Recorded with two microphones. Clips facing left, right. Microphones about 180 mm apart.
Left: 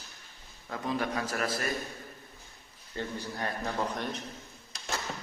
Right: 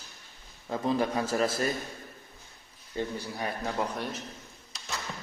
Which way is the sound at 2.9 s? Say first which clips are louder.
Right 3 dB; 10° right (ahead or behind).